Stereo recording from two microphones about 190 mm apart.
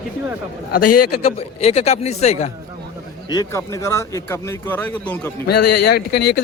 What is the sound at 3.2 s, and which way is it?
Speech, 20° left (ahead or behind).